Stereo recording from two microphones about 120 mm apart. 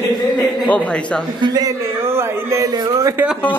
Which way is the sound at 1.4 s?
35° right (ahead or behind).